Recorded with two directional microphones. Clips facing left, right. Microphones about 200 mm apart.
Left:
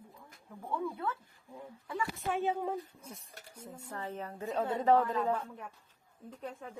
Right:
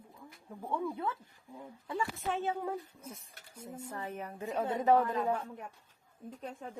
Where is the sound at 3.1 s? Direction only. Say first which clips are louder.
Left 1 dB; 5° right (ahead or behind).